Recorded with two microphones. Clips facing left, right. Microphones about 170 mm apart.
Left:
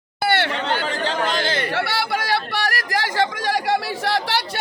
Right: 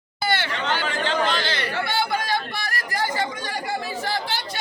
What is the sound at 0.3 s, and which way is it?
Speech, 65° left (ahead or behind).